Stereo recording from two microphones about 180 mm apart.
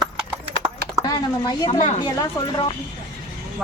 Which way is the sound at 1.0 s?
20° left (ahead or behind).